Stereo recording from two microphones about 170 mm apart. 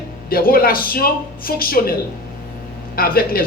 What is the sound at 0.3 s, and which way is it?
A man's voice, 60° left (ahead or behind).